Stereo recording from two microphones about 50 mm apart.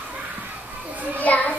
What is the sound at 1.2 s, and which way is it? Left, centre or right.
Speech, left.